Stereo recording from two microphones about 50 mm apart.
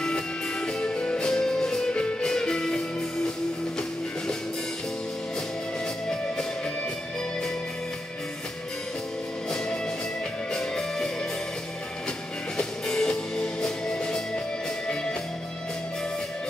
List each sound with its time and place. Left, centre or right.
0.0 s music: centre
6.0 s music: centre
10.5 s music: centre
12.5 s music: centre